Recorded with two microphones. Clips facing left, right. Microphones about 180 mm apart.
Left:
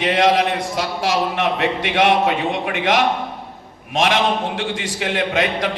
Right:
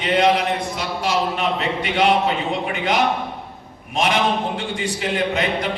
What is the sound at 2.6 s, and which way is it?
A man's voice, 85° left.